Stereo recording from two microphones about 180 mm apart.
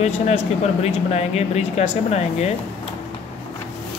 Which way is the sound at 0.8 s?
35° left (ahead or behind).